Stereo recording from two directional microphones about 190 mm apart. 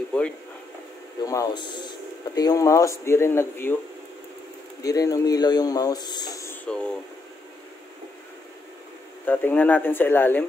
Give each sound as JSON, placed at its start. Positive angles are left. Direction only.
{"t": 0.1, "sound": "speech", "side_deg": 5}
{"t": 1.2, "sound": "speech", "side_deg": 20}
{"t": 4.8, "sound": "speech", "side_deg": 20}
{"t": 9.2, "sound": "speech", "side_deg": 10}